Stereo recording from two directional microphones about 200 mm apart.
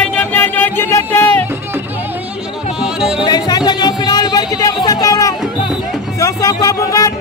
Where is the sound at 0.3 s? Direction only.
10° left (ahead or behind).